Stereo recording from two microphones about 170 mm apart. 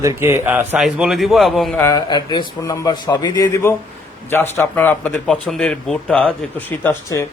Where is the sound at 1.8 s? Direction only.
20° left (ahead or behind).